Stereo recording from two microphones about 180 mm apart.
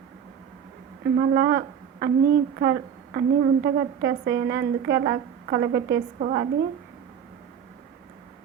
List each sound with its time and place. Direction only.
1.1 s a woman's voice: 55° right (ahead or behind); by 6.0 s 70° right (ahead or behind)
6.1 s a woman's voice: 50° right (ahead or behind)